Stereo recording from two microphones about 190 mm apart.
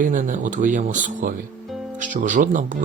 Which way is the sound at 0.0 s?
45° right (ahead or behind).